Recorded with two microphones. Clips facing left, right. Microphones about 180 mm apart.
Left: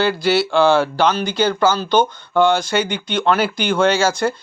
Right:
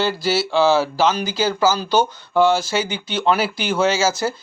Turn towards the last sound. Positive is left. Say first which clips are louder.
# left 2 dB
turn(degrees=-5)  # may be behind; listen again after turning